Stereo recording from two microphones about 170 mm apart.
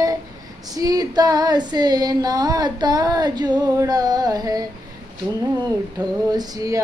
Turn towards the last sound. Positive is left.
turn(degrees=-20)  # may be behind; listen again after turning